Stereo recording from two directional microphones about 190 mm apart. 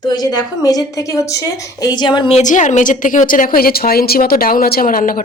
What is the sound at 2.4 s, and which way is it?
A woman's voice, 40° left (ahead or behind).